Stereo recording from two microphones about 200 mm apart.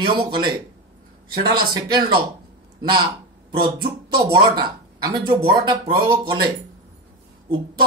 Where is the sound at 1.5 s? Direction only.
20° right (ahead or behind).